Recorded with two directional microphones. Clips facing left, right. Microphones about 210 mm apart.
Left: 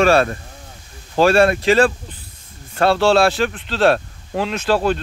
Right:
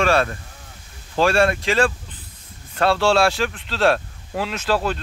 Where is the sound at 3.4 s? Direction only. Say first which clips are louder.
Left 3 dB; 35° left (ahead or behind).